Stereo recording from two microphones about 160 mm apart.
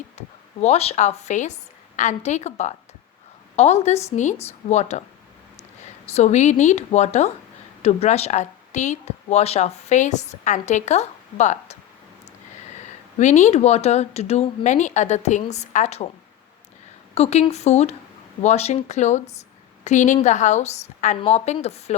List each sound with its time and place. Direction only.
0.2 s a woman's voice: 45° left (ahead or behind)
13.1 s a woman's voice: 45° left (ahead or behind)
17.2 s a woman's voice: 40° left (ahead or behind)